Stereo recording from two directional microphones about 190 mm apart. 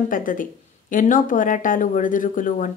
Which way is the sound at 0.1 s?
45° left (ahead or behind).